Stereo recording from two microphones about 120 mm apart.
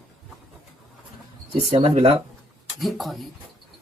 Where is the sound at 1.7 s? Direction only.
50° right (ahead or behind).